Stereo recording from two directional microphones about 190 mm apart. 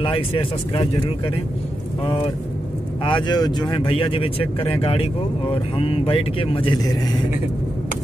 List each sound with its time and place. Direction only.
0.0 s speech: 30° left (ahead or behind)
3.0 s speech: 25° left (ahead or behind)